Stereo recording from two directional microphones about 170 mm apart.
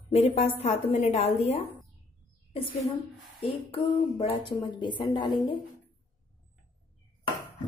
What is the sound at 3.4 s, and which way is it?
A woman's voice, 35° left (ahead or behind).